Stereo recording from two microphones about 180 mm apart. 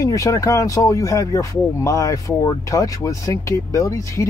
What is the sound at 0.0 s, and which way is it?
Speech, 15° left (ahead or behind).